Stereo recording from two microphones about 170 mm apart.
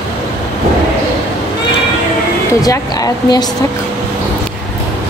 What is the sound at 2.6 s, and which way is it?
Speech, 20° left (ahead or behind).